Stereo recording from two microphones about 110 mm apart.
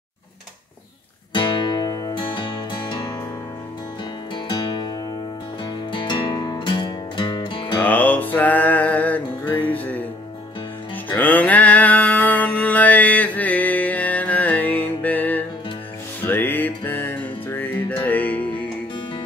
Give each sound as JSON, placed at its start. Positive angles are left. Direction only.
{"t": 1.3, "sound": "music", "side_deg": 45}
{"t": 4.5, "sound": "music", "side_deg": 45}
{"t": 7.8, "sound": "music", "side_deg": 15}
{"t": 11.1, "sound": "music", "side_deg": 15}